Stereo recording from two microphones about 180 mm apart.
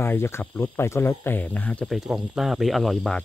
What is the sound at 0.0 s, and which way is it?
Speech, 15° left (ahead or behind).